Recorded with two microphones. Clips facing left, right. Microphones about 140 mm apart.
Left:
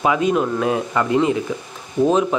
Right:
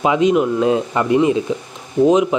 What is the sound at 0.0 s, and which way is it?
Speech, 20° right (ahead or behind).